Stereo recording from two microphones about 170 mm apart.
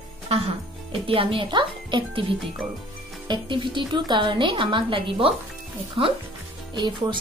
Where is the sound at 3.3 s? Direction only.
30° right (ahead or behind).